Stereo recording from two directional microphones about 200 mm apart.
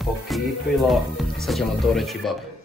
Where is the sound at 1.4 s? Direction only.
Centre (ahead or behind).